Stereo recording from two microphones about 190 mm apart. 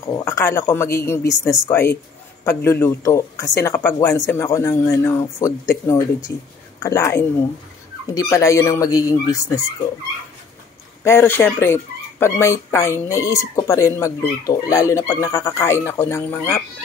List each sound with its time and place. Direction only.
0.0 s speech: 20° left (ahead or behind)
11.1 s speech: 10° left (ahead or behind)